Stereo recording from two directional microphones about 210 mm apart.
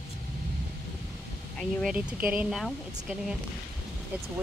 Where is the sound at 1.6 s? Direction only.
Centre (ahead or behind).